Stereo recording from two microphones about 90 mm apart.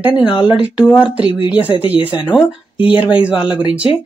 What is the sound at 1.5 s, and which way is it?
Speech, 20° right (ahead or behind).